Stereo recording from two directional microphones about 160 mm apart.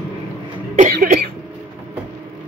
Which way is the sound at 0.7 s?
55° right (ahead or behind).